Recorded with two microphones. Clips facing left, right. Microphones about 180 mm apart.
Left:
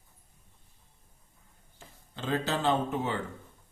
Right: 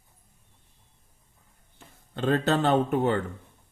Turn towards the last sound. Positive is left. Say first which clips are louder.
# right 6 dB
turn(degrees=-60)  # may be behind; listen again after turning